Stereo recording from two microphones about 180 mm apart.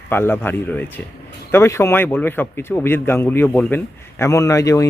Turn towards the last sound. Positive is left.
turn(degrees=15)  # may be behind; listen again after turning